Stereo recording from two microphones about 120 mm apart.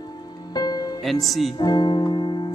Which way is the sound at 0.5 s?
35° left (ahead or behind).